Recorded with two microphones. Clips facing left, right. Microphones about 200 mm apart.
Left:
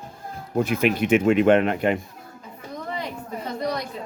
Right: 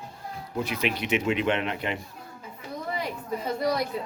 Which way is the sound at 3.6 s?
10° right (ahead or behind).